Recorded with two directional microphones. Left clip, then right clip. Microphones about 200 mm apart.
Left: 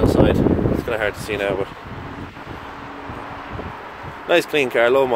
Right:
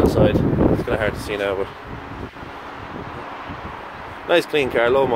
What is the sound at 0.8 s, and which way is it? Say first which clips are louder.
Speech: even; 10° left (ahead or behind).